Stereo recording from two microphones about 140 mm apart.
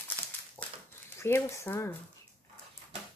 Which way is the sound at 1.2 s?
20° left (ahead or behind).